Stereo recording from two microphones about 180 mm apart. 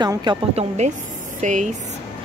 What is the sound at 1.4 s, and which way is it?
Speech, 40° right (ahead or behind).